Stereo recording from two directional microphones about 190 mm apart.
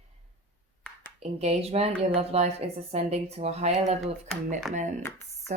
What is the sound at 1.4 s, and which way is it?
Speech, 35° right (ahead or behind).